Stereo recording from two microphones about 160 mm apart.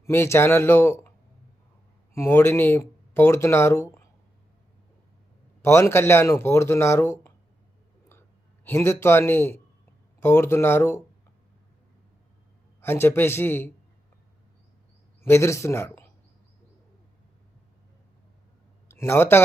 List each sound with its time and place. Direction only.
0.0 s speech: 15° left (ahead or behind)
2.1 s speech: 15° left (ahead or behind)
5.6 s speech: 15° left (ahead or behind)
8.6 s speech: 15° left (ahead or behind)
12.8 s speech: 15° left (ahead or behind)
15.2 s speech: 15° left (ahead or behind)
18.9 s speech: 15° left (ahead or behind)